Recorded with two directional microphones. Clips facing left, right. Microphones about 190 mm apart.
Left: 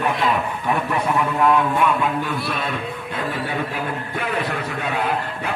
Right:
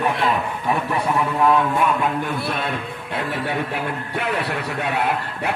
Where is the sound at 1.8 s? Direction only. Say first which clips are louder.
Even; 50° right (ahead or behind); by 3.5 s 65° right (ahead or behind).